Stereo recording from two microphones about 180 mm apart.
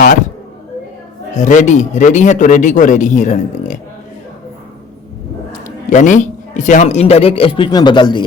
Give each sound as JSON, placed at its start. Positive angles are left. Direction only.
{"t": 1.4, "sound": "a man's voice", "side_deg": 45}
{"t": 5.6, "sound": "a man's voice", "side_deg": 45}